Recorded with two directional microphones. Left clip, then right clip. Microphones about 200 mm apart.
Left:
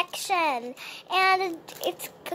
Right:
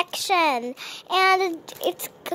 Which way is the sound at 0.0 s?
55° right (ahead or behind).